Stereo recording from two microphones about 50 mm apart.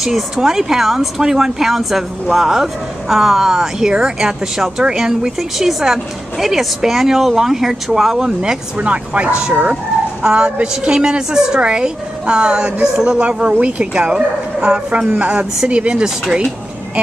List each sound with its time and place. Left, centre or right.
0.0 s speech: centre
8.7 s speech: right